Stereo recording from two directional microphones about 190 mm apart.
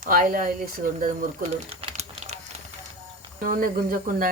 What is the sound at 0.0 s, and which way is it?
Speech, 50° right (ahead or behind).